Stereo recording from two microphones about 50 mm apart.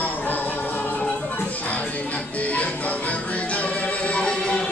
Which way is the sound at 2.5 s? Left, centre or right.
Left.